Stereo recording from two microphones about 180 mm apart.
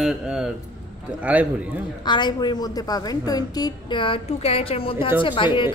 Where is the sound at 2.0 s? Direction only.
25° left (ahead or behind).